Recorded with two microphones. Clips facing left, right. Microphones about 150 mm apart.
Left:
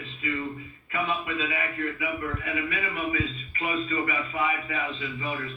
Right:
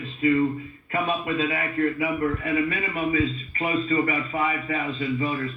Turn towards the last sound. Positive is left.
turn(degrees=-40)  # may be behind; listen again after turning